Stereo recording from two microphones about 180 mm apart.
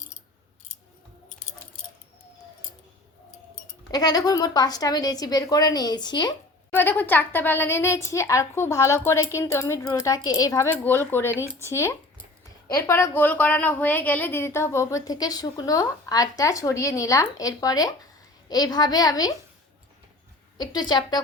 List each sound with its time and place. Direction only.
3.9 s speech: 20° left (ahead or behind)
6.7 s a woman's voice: 10° left (ahead or behind)
20.6 s speech: 20° left (ahead or behind)